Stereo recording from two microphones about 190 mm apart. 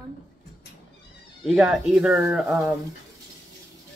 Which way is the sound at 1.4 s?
Centre (ahead or behind).